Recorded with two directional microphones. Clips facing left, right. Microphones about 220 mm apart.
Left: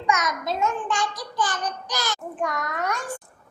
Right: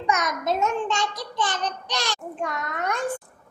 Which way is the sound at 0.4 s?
25° right (ahead or behind).